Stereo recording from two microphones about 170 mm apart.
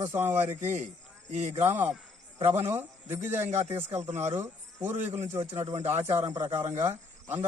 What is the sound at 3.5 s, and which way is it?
Speech, 40° right (ahead or behind).